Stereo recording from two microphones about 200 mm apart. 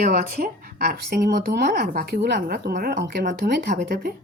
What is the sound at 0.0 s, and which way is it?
Speech, 45° right (ahead or behind).